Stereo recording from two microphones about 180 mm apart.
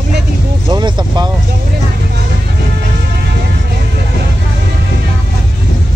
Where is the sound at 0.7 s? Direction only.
25° right (ahead or behind).